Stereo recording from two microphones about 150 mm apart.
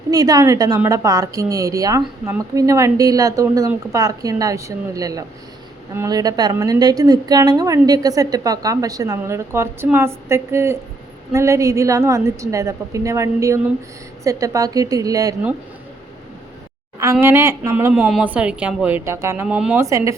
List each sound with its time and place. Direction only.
0.1 s a woman's voice: 25° right (ahead or behind)
17.0 s speech: 20° right (ahead or behind)
19.8 s a woman's voice: 20° right (ahead or behind)